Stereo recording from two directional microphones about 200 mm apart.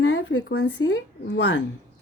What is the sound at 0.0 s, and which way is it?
Speech, 70° left (ahead or behind).